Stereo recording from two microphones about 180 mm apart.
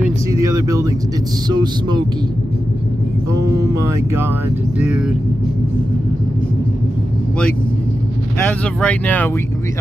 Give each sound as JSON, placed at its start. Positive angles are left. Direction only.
{"t": 0.3, "sound": "vehicle", "side_deg": -20}
{"t": 1.5, "sound": "speech", "side_deg": -25}
{"t": 3.7, "sound": "speech", "side_deg": -15}
{"t": 8.5, "sound": "speech", "side_deg": 10}